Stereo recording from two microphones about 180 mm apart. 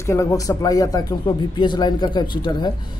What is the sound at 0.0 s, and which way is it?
Speech, 15° left (ahead or behind).